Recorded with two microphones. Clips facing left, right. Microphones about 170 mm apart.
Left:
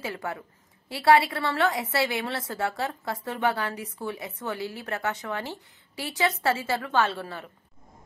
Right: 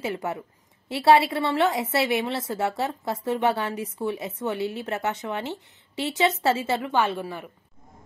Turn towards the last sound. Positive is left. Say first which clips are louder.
# right 3 dB
turn(degrees=-15)  # may be behind; listen again after turning